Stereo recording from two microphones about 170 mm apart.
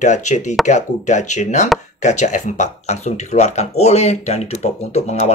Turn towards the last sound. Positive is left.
turn(degrees=40)  # may be behind; listen again after turning